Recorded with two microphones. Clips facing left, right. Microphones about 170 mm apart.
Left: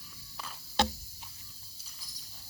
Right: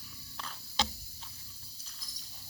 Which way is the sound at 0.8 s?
60° left (ahead or behind).